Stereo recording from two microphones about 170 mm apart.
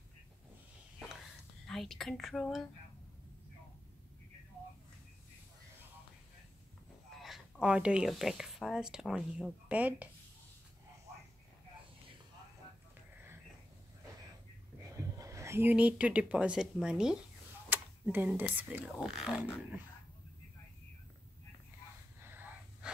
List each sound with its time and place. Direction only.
1.7 s speech: centre (ahead or behind)
7.2 s speech: 5° right (ahead or behind)
15.0 s speech: 20° right (ahead or behind)
22.2 s wheeze: 10° right (ahead or behind)